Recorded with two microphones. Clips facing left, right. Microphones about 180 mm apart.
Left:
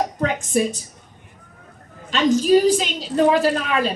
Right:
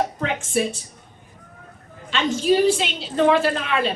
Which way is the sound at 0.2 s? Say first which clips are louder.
Left 3 dB; 40° left (ahead or behind).